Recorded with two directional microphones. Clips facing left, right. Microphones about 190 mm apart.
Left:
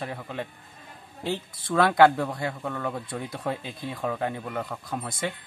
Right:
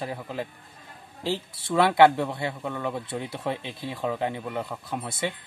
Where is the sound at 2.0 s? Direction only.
25° right (ahead or behind).